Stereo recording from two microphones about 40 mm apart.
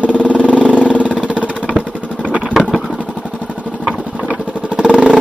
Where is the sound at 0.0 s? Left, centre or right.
Left.